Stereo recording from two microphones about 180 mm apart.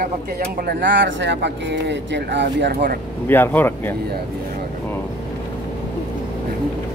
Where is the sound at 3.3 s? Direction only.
10° left (ahead or behind).